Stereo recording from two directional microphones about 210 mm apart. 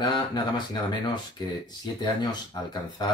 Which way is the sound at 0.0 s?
20° left (ahead or behind).